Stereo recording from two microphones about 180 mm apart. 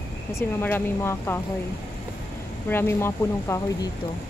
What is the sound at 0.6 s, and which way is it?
Speech, 10° left (ahead or behind).